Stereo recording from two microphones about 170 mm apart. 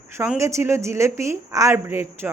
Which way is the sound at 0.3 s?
15° right (ahead or behind).